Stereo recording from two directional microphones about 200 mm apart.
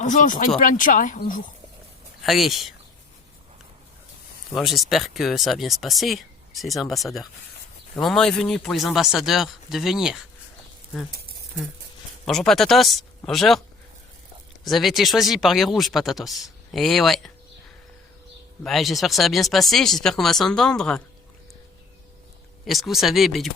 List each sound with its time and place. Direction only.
0.0 s speech: 40° left (ahead or behind)
2.2 s speech: centre (ahead or behind)
4.5 s speech: centre (ahead or behind)
11.1 s a sound: 50° right (ahead or behind)
12.2 s speech: centre (ahead or behind)
14.6 s speech: centre (ahead or behind)
18.6 s speech: centre (ahead or behind)
22.6 s speech: centre (ahead or behind)